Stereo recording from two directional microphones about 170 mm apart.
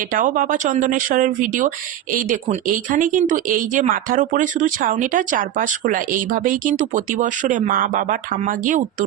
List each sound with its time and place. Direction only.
0.1 s speech: 55° right (ahead or behind)